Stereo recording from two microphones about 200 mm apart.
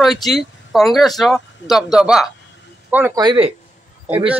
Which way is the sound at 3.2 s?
25° right (ahead or behind).